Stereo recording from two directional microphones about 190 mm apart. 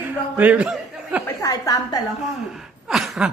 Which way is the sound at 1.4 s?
20° left (ahead or behind).